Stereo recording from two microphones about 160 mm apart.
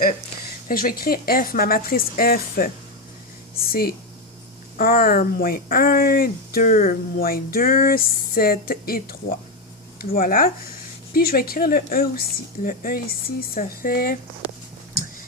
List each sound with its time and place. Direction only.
0.7 s a woman's voice: 65° left (ahead or behind)
3.7 s a woman's voice: 70° left (ahead or behind)